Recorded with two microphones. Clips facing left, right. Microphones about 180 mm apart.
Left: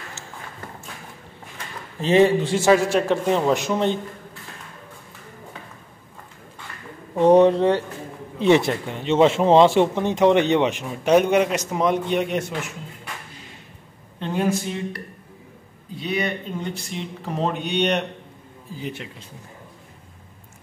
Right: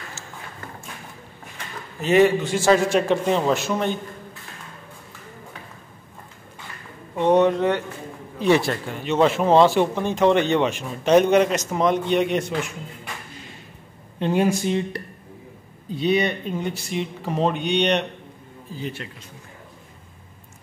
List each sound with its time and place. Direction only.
2.0 s speech: 30° left (ahead or behind)
2.7 s speech: 5° left (ahead or behind)
3.4 s a man's voice: 15° left (ahead or behind)
7.2 s speech: 35° left (ahead or behind); by 12.5 s 5° left (ahead or behind)
14.2 s speech: 15° right (ahead or behind)
16.0 s speech: 25° right (ahead or behind)
16.6 s speech: 5° right (ahead or behind)
18.8 s a man's voice: 15° left (ahead or behind)